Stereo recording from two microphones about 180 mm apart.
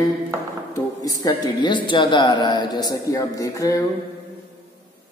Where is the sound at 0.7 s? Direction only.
20° left (ahead or behind).